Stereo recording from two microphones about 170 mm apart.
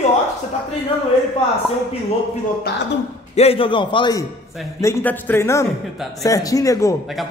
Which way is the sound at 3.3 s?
35° left (ahead or behind).